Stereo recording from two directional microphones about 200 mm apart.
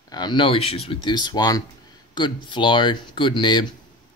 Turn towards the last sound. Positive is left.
turn(degrees=25)  # may be behind; listen again after turning